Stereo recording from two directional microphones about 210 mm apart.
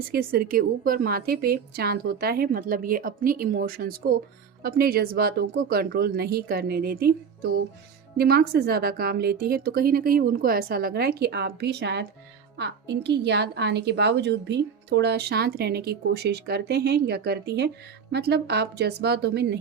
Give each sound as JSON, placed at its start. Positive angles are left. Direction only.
{"t": 0.1, "sound": "a woman's voice", "side_deg": -45}